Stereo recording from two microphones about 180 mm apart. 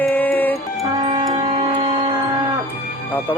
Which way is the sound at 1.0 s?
30° right (ahead or behind).